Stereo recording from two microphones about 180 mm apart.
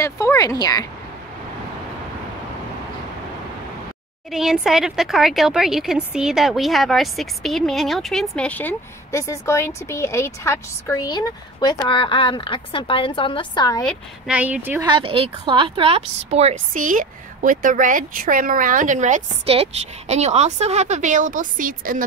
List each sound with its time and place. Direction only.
0.0 s speech: 15° left (ahead or behind)
4.3 s speech: centre (ahead or behind); by 13.8 s 20° left (ahead or behind)
13.8 s speech: 5° right (ahead or behind)
14.9 s speech: 30° right (ahead or behind); by 22.0 s 50° right (ahead or behind)